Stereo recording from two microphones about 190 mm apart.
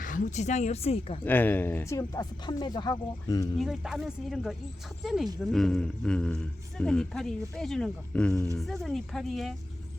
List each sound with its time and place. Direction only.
0.0 s speech: 40° left (ahead or behind)
1.2 s speech: 10° left (ahead or behind)
3.6 s speech: centre (ahead or behind)